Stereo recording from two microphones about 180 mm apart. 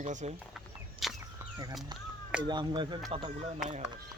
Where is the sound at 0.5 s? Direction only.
Centre (ahead or behind).